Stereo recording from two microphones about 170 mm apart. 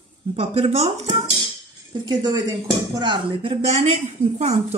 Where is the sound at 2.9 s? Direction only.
25° right (ahead or behind).